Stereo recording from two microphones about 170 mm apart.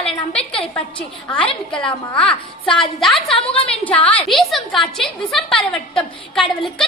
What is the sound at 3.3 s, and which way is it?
Speech, 35° left (ahead or behind).